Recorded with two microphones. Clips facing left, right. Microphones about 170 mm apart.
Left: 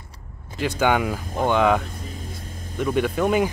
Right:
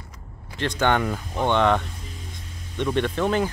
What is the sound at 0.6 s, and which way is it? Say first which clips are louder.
Speech: left 1 dB; 10° left (ahead or behind).